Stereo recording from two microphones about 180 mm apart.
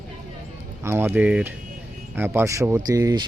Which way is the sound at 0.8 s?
15° right (ahead or behind).